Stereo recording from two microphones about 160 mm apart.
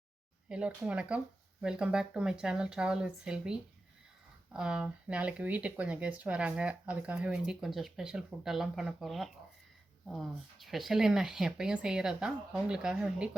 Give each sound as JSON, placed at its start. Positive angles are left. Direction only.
{"t": 0.4, "sound": "speech", "side_deg": -5}